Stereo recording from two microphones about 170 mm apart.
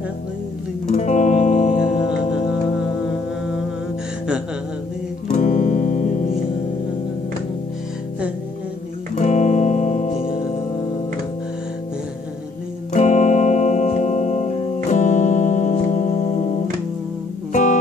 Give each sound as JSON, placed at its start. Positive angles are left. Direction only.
{"t": 0.9, "sound": "music", "side_deg": 45}
{"t": 5.3, "sound": "music", "side_deg": 50}
{"t": 9.1, "sound": "music", "side_deg": 45}
{"t": 12.9, "sound": "music", "side_deg": 45}
{"t": 17.5, "sound": "music", "side_deg": 50}